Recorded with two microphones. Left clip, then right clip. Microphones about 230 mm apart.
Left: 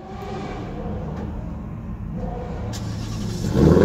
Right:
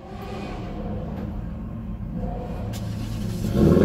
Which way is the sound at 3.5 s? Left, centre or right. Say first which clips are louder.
Left 3 dB; left.